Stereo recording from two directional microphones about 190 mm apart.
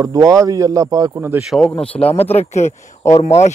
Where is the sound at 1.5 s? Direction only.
5° left (ahead or behind).